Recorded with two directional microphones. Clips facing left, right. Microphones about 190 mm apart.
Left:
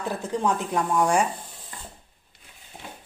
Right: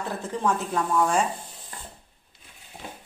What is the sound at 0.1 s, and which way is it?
A woman's voice, 15° left (ahead or behind).